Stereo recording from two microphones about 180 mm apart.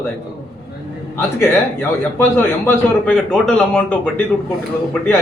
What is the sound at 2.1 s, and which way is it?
A man's voice, 10° left (ahead or behind).